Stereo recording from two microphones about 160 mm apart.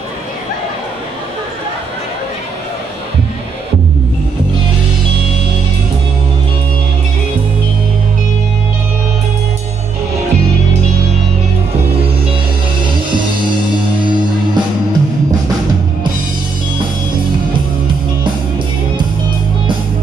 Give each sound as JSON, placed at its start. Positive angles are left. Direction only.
{"t": 14.0, "sound": "music", "side_deg": -25}